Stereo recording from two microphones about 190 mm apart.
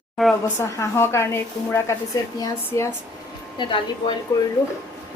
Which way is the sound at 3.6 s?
25° left (ahead or behind).